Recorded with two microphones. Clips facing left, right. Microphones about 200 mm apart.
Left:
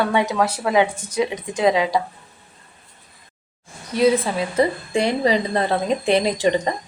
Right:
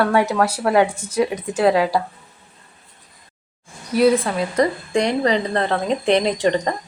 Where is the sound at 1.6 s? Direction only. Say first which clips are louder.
Right 2 dB; 15° left (ahead or behind).